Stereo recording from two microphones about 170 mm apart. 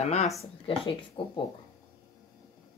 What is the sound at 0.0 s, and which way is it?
Speech, 40° left (ahead or behind).